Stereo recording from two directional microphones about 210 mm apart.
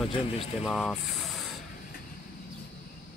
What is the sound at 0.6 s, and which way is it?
Speech, centre (ahead or behind).